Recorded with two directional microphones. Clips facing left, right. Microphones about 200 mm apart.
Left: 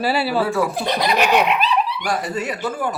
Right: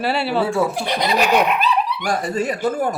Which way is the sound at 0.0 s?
Centre (ahead or behind).